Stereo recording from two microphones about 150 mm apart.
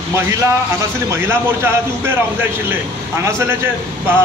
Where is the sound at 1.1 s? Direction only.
15° right (ahead or behind).